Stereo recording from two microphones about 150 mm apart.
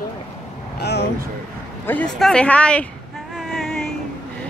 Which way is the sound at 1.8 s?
10° left (ahead or behind).